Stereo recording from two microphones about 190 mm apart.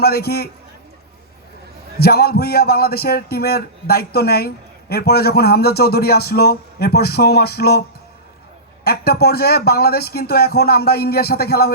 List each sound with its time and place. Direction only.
0.0 s a man's voice: 55° left (ahead or behind)
2.0 s a man's voice: 55° left (ahead or behind)
8.8 s a man's voice: 55° left (ahead or behind)